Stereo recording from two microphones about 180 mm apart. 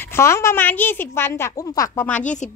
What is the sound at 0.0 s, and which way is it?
A woman's voice, 15° left (ahead or behind).